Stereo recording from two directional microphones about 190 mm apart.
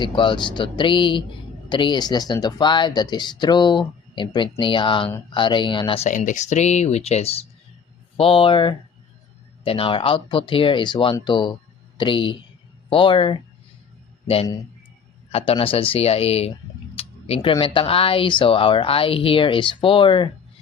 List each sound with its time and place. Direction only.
0.0 s speech: 25° left (ahead or behind)
6.1 s speech: 40° left (ahead or behind)
15.3 s speech: 30° left (ahead or behind)